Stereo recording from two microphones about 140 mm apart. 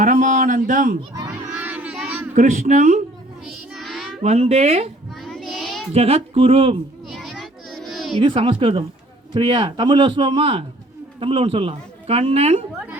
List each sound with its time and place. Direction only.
0.0 s a sound: 60° right (ahead or behind)
1.5 s a sound: 10° right (ahead or behind)
2.3 s a woman's voice: 60° right (ahead or behind)
3.4 s child singing: centre (ahead or behind)
4.2 s speech: 50° right (ahead or behind)
5.2 s child singing: centre (ahead or behind)
5.9 s speech: 45° right (ahead or behind)
7.1 s a sound: centre (ahead or behind)
8.2 s a man's voice: 35° right (ahead or behind)